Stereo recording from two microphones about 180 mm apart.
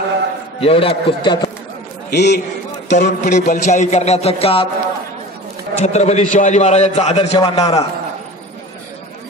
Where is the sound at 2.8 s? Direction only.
40° left (ahead or behind).